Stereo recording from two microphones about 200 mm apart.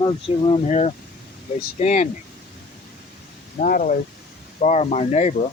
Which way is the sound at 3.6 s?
40° left (ahead or behind).